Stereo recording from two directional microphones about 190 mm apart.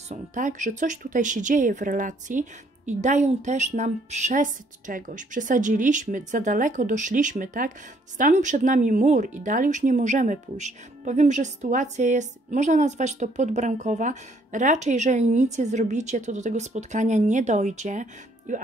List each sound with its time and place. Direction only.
0.1 s speech: 40° right (ahead or behind)